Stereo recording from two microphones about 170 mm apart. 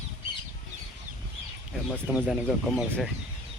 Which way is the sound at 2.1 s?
10° right (ahead or behind).